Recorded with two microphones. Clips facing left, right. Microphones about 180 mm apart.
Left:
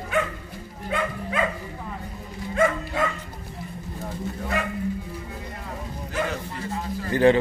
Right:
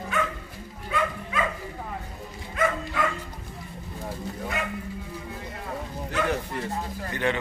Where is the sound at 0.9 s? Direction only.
50° left (ahead or behind).